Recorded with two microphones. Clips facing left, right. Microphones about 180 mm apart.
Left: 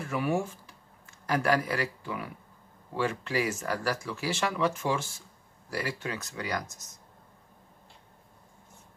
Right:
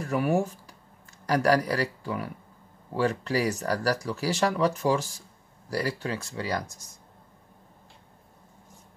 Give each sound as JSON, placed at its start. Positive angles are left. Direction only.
{"t": 0.0, "sound": "speech", "side_deg": -40}